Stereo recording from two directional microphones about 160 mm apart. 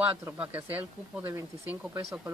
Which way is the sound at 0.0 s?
10° right (ahead or behind).